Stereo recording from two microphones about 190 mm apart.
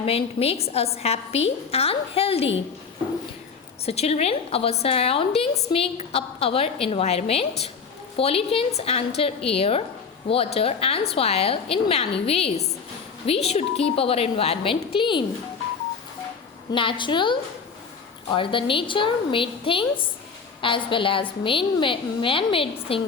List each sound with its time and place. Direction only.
0.0 s a woman's voice: 30° left (ahead or behind)
3.8 s a woman's voice: 35° left (ahead or behind)
16.7 s a woman's voice: 25° left (ahead or behind)